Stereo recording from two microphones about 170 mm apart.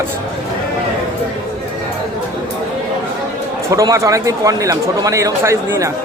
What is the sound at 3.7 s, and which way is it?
Speech, 20° right (ahead or behind).